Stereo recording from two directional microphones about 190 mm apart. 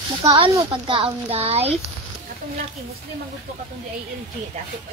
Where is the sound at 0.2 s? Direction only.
20° right (ahead or behind).